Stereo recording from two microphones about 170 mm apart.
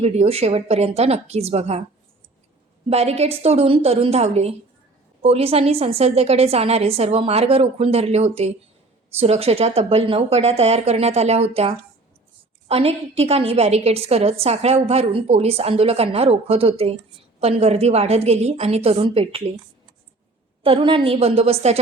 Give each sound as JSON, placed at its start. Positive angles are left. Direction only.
{"t": 0.0, "sound": "a woman's voice", "side_deg": -40}
{"t": 2.9, "sound": "a woman's voice", "side_deg": -40}
{"t": 20.7, "sound": "a woman's voice", "side_deg": -30}